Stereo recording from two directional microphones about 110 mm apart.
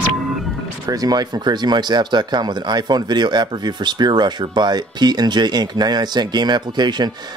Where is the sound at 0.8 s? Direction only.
35° right (ahead or behind).